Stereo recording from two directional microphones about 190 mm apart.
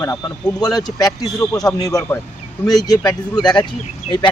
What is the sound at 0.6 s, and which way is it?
A man's voice, 20° left (ahead or behind).